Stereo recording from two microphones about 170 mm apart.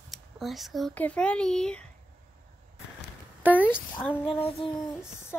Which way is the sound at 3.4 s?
10° right (ahead or behind).